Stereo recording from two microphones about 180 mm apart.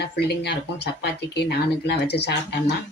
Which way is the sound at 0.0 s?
70° left (ahead or behind).